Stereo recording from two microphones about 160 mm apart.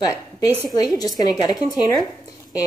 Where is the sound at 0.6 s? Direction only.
25° left (ahead or behind).